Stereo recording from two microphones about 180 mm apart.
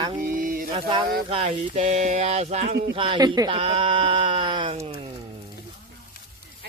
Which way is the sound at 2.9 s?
25° right (ahead or behind).